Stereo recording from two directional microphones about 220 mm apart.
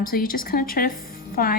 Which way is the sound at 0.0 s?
40° left (ahead or behind).